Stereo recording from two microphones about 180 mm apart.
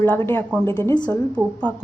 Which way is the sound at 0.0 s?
10° left (ahead or behind).